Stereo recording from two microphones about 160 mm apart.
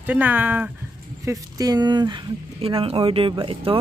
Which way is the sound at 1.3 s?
25° right (ahead or behind).